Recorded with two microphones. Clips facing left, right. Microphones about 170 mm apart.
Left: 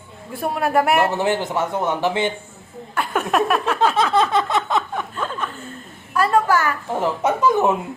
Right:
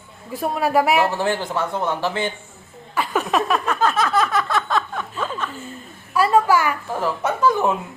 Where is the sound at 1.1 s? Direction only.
20° left (ahead or behind).